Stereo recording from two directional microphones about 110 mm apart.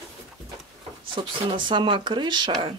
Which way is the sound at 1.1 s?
50° right (ahead or behind).